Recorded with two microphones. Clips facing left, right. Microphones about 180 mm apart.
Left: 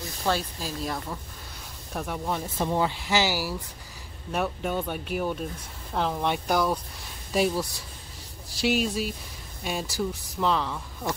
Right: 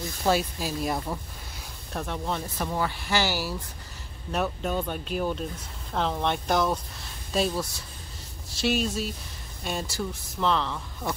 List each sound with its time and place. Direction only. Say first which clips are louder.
0.2 s speech: right 3 dB; 10° right (ahead or behind)
2.0 s speech: left 1 dB; 10° left (ahead or behind)